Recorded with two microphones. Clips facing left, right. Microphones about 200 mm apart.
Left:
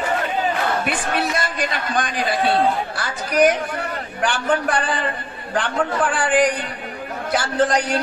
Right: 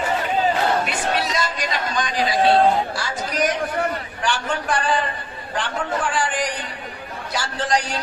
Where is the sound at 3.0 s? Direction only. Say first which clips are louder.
Left 6 dB; 55° left (ahead or behind).